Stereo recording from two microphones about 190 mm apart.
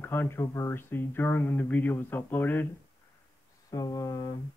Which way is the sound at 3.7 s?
20° left (ahead or behind).